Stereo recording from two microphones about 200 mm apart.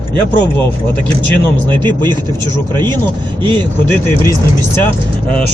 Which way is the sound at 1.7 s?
20° right (ahead or behind).